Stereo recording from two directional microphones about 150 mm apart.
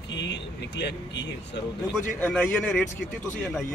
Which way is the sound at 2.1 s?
10° left (ahead or behind).